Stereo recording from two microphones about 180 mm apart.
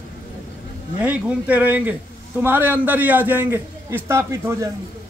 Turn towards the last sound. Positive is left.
turn(degrees=-15)  # may be behind; listen again after turning